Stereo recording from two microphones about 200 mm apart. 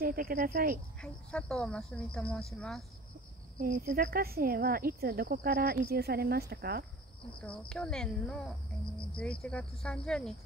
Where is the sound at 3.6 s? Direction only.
50° right (ahead or behind).